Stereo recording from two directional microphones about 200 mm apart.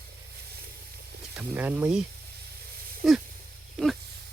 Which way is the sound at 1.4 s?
10° right (ahead or behind).